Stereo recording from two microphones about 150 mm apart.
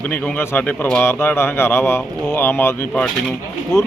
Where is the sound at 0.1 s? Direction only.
15° left (ahead or behind).